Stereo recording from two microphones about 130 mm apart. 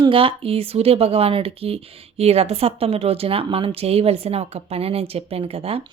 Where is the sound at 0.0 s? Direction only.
45° right (ahead or behind).